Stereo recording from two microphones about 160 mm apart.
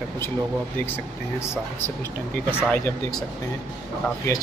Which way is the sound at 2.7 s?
5° left (ahead or behind).